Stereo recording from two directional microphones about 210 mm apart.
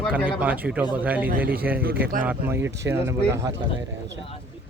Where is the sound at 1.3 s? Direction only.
45° right (ahead or behind).